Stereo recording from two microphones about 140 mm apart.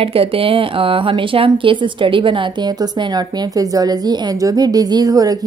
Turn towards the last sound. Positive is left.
turn(degrees=-25)  # may be behind; listen again after turning